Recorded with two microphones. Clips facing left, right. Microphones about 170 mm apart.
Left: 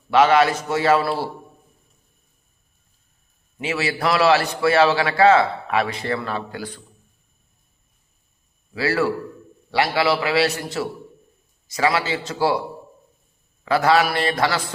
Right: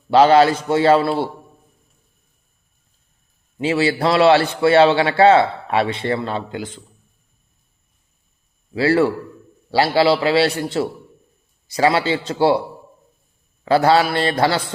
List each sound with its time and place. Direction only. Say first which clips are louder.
0.1 s a man's voice: right 4 dB; 30° right (ahead or behind)
3.6 s a man's voice: right 6 dB; 30° right (ahead or behind)
8.7 s a man's voice: right 5 dB; 30° right (ahead or behind)
13.7 s a man's voice: right 3 dB; 30° right (ahead or behind)